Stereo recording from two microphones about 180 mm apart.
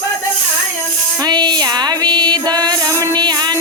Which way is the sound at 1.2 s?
25° right (ahead or behind).